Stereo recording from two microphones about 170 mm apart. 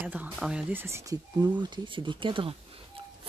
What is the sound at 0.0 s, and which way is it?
Speech, 10° right (ahead or behind).